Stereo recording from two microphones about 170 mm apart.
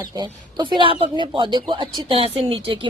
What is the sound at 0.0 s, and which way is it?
Speech, 25° right (ahead or behind).